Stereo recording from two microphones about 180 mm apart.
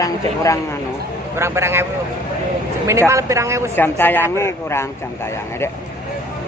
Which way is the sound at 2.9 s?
15° right (ahead or behind).